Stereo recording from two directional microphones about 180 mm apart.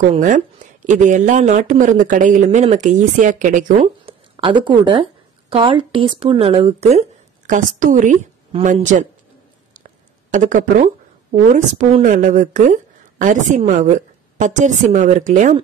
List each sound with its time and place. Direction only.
0.1 s speech: 45° right (ahead or behind)
4.0 s speech: 25° right (ahead or behind); by 9.0 s 45° right (ahead or behind)
9.8 s a sound: 45° right (ahead or behind)
11.4 s speech: 40° right (ahead or behind)